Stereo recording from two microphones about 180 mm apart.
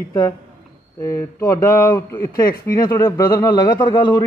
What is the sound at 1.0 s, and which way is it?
A man's voice, 20° left (ahead or behind).